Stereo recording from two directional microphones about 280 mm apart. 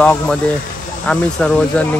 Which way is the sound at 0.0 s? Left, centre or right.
Centre.